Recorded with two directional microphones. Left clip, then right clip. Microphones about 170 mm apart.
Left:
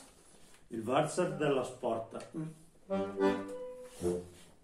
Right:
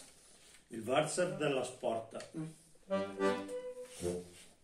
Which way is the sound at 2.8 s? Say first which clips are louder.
Left 2 dB; 10° left (ahead or behind).